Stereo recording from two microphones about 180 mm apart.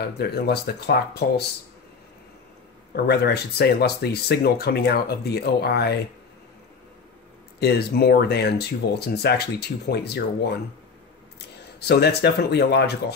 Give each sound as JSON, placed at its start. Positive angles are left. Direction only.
{"t": 0.0, "sound": "speech", "side_deg": 60}
{"t": 2.9, "sound": "speech", "side_deg": 65}
{"t": 7.6, "sound": "speech", "side_deg": 60}